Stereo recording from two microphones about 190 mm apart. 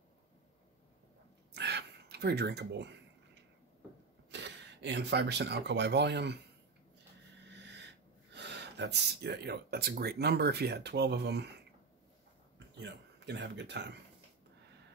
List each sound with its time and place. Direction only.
1.5 s gasp: 60° right (ahead or behind)
4.3 s speech: 65° right (ahead or behind)
7.4 s speech: 65° right (ahead or behind)
12.5 s speech: 65° right (ahead or behind)